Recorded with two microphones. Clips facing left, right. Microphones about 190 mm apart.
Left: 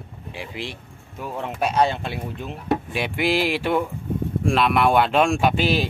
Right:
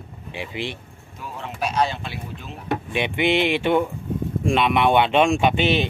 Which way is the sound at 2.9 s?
5° left (ahead or behind).